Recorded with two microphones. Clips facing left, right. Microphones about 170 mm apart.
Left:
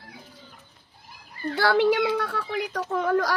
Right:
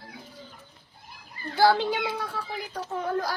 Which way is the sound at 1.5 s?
65° left (ahead or behind).